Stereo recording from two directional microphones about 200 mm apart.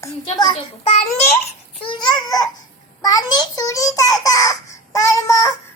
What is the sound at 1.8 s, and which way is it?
Babbling, 20° left (ahead or behind).